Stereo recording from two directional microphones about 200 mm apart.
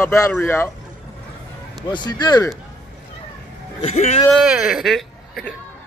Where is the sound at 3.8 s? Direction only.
35° left (ahead or behind).